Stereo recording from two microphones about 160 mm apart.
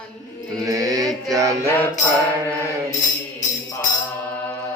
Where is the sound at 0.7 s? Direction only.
20° right (ahead or behind).